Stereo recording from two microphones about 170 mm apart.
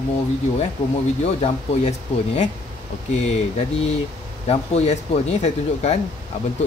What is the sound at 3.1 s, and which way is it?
Speech, 40° left (ahead or behind).